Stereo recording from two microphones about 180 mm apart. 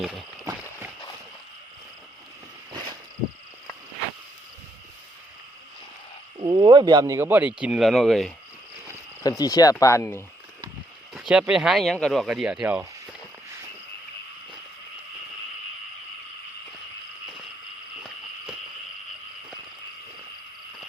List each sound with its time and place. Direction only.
0.0 s speech: centre (ahead or behind)
6.4 s speech: 25° right (ahead or behind); by 8.3 s centre (ahead or behind)
9.2 s speech: 20° left (ahead or behind)
11.1 s speech: 5° right (ahead or behind)
12.6 s a sound: 10° right (ahead or behind)